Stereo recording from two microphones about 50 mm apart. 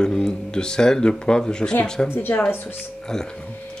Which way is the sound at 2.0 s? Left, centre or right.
Left.